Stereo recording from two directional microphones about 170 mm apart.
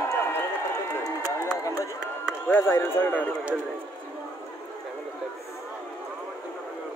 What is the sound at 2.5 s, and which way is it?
Speech, 15° left (ahead or behind).